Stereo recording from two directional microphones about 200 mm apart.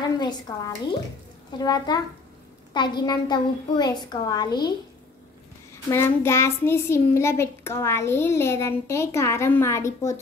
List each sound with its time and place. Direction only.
0.2 s a woman's voice: 20° left (ahead or behind)
5.9 s a child's voice: 15° left (ahead or behind)